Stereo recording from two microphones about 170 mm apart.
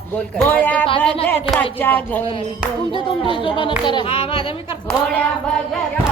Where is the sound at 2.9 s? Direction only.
30° left (ahead or behind).